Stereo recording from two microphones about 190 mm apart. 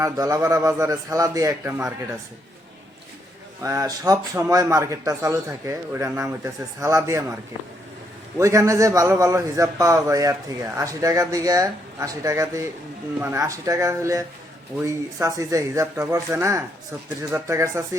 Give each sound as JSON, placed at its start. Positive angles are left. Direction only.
{"t": 0.0, "sound": "a man's voice", "side_deg": -15}
{"t": 3.6, "sound": "a man's voice", "side_deg": -15}
{"t": 8.4, "sound": "a man's voice", "side_deg": -15}